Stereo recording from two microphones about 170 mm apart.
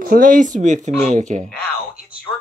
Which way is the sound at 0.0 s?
55° right (ahead or behind).